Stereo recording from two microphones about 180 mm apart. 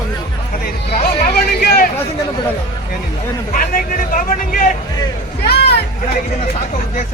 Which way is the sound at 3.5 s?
50° left (ahead or behind).